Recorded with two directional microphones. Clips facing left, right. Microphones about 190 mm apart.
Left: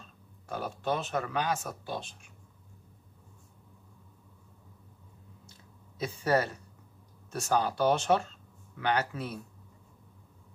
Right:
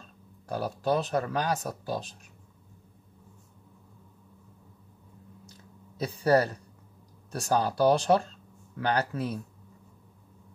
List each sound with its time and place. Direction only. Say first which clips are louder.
0.5 s speech: right 4 dB; 35° right (ahead or behind)
5.9 s speech: right 4 dB; 35° right (ahead or behind)